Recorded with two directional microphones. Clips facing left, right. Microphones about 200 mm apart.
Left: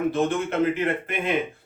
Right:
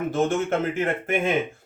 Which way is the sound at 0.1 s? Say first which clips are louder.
Right 1 dB; 45° right (ahead or behind).